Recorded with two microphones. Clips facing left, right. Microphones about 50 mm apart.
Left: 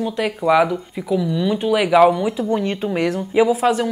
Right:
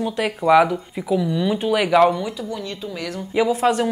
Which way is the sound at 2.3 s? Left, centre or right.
Left.